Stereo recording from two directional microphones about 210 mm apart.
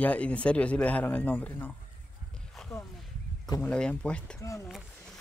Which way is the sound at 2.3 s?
Centre (ahead or behind).